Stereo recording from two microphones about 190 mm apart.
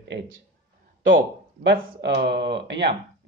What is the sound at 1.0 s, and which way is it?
Speech, 85° right.